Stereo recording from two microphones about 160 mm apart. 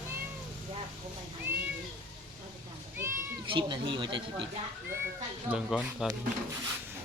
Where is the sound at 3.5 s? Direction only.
30° right (ahead or behind).